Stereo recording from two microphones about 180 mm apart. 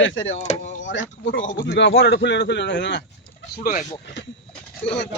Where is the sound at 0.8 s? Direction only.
90° left.